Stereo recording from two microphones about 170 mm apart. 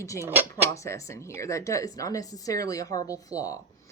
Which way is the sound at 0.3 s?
10° right (ahead or behind).